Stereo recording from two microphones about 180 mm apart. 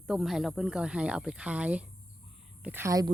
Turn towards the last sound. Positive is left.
turn(degrees=-15)  # may be behind; listen again after turning